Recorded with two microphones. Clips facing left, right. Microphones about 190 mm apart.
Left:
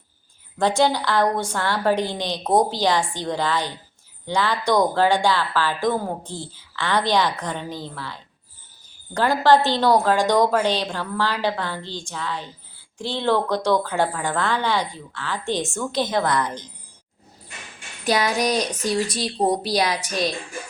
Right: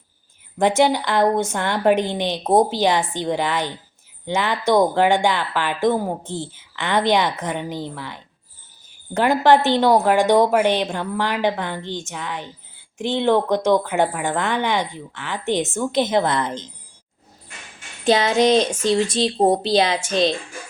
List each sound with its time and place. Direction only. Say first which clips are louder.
0.8 s a woman's voice: right 1 dB; 20° right (ahead or behind)
18.0 s a woman's voice: right 5 dB; 25° right (ahead or behind)